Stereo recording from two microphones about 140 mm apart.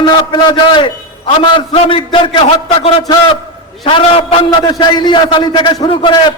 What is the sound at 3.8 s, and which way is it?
A man's voice, 40° left (ahead or behind).